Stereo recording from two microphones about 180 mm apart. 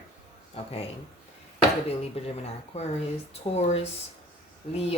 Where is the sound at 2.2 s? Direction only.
35° left (ahead or behind).